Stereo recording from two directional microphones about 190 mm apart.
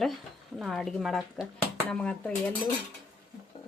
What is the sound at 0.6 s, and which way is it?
A woman's voice, centre (ahead or behind).